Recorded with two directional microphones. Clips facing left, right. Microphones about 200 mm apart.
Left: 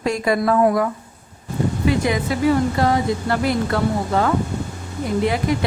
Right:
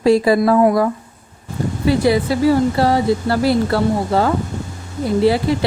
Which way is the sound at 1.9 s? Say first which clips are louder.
Right 6 dB; 35° right (ahead or behind).